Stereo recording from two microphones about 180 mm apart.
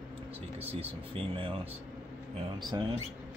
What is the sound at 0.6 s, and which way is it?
Speech, 30° right (ahead or behind).